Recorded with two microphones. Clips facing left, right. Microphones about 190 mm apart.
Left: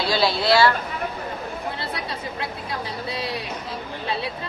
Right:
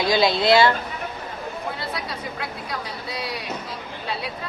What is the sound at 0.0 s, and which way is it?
Speech, 15° right (ahead or behind).